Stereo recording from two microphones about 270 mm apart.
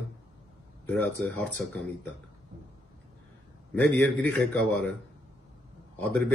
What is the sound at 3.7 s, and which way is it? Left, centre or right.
Speech, centre.